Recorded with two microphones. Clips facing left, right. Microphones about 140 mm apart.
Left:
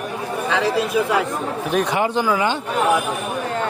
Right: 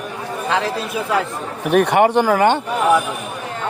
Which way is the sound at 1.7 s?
65° right (ahead or behind).